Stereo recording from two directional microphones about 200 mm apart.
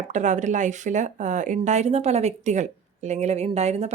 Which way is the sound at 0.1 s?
35° right (ahead or behind).